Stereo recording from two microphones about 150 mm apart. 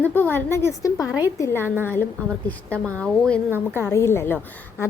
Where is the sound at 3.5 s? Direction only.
15° right (ahead or behind).